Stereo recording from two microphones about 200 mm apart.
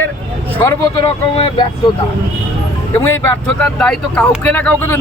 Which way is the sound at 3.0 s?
10° left (ahead or behind).